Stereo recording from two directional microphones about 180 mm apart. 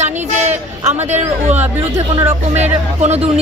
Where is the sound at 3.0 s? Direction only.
35° right (ahead or behind).